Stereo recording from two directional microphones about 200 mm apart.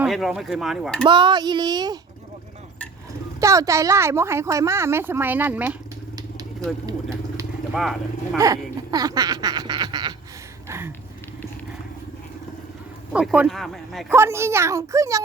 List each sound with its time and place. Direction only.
0.0 s speech: centre (ahead or behind)
1.0 s laughter: 25° right (ahead or behind)
3.4 s a woman's voice: 15° right (ahead or behind)
7.7 s speech: centre (ahead or behind)
8.4 s laughter: 20° right (ahead or behind)
10.7 s a woman's voice: 10° right (ahead or behind)
13.1 s speech: 5° right (ahead or behind)
14.1 s a woman's voice: 15° right (ahead or behind)